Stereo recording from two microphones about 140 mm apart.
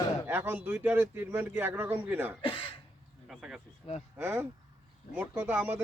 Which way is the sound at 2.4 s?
40° left (ahead or behind).